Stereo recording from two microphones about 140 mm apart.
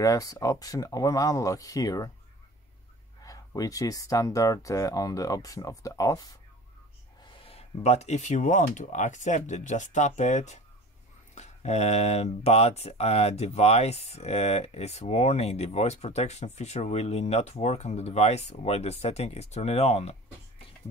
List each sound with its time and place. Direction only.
0.0 s speech: 25° left (ahead or behind)
3.2 s speech: 25° left (ahead or behind)
7.4 s speech: 50° left (ahead or behind)